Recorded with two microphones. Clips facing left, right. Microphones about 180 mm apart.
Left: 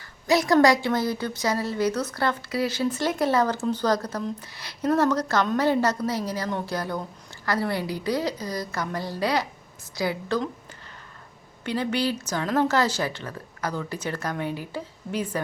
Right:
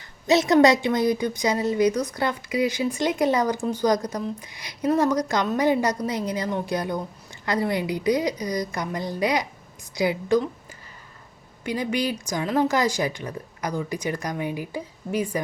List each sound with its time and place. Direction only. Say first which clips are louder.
0.3 s a woman's voice: right 2 dB; 20° right (ahead or behind)
11.6 s a woman's voice: even; 10° right (ahead or behind)